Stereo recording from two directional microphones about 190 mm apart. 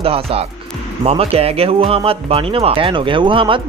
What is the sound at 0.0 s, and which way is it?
Speech, 30° right (ahead or behind).